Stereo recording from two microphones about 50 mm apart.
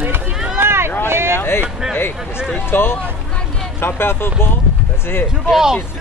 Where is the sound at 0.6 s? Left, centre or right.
Right.